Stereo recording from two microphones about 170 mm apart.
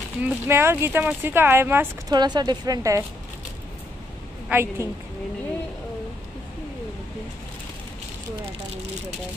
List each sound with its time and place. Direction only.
0.2 s speech: 15° right (ahead or behind)
2.1 s speech: 25° right (ahead or behind)
4.5 s speech: 15° right (ahead or behind)